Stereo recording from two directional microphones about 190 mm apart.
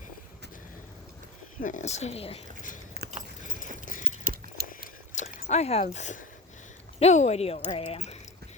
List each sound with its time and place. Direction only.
1.6 s speech: 40° left (ahead or behind)
3.0 s keys jangling: 55° right (ahead or behind)
3.8 s clip-clop: 45° left (ahead or behind)
4.2 s a sound: 50° right (ahead or behind)
4.8 s a sound: 40° left (ahead or behind)
7.0 s speech: 35° left (ahead or behind)